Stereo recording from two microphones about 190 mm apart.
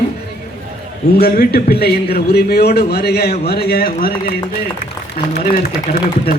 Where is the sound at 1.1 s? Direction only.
55° left (ahead or behind).